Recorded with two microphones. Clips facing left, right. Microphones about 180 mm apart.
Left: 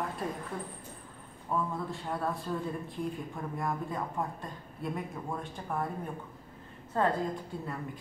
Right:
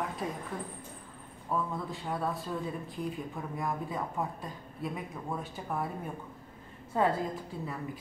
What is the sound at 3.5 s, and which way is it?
Speech, centre (ahead or behind).